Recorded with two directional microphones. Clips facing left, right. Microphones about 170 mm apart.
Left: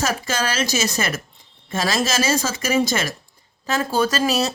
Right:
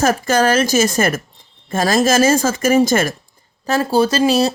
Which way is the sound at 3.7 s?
30° right (ahead or behind).